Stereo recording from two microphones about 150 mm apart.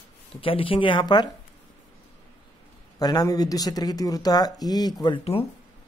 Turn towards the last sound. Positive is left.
turn(degrees=35)  # may be behind; listen again after turning